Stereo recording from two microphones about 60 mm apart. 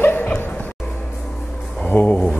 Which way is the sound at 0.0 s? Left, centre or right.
Left.